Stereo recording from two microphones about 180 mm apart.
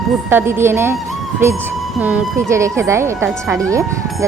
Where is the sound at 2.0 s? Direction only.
10° right (ahead or behind).